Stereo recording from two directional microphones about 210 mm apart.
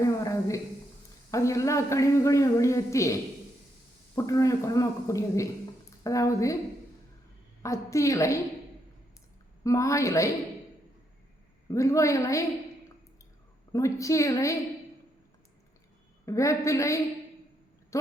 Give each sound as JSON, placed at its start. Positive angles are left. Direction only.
{"t": 0.0, "sound": "a sound", "side_deg": 15}
{"t": 1.3, "sound": "a man's voice", "side_deg": 15}
{"t": 7.6, "sound": "a man's voice", "side_deg": 15}
{"t": 9.6, "sound": "a man's voice", "side_deg": 15}
{"t": 11.7, "sound": "a man's voice", "side_deg": 15}
{"t": 13.7, "sound": "a man's voice", "side_deg": 15}
{"t": 16.2, "sound": "a man's voice", "side_deg": 15}